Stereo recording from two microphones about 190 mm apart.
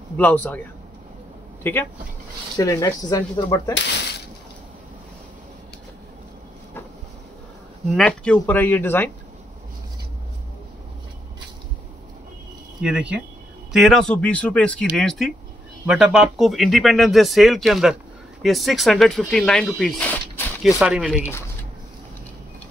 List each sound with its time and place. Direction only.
0.2 s speech: 10° left (ahead or behind)
1.6 s speech: 10° left (ahead or behind)
7.9 s speech: 5° left (ahead or behind)
12.8 s speech: 5° right (ahead or behind)
21.2 s speech: 15° left (ahead or behind)